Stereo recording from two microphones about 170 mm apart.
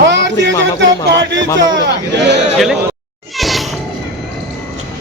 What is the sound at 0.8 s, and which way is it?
Music, 90° right.